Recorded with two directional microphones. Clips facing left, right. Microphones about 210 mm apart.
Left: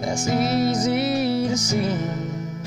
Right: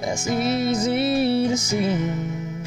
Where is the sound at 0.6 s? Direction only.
25° right (ahead or behind).